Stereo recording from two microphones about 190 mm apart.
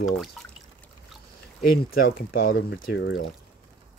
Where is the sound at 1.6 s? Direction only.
50° left (ahead or behind); by 3.2 s 70° left (ahead or behind).